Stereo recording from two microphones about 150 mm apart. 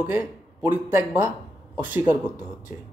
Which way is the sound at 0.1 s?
15° right (ahead or behind).